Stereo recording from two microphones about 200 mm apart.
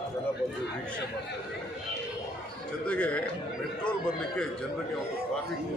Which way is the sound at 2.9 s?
5° left (ahead or behind).